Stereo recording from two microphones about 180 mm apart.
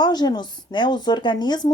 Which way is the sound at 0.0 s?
25° left (ahead or behind).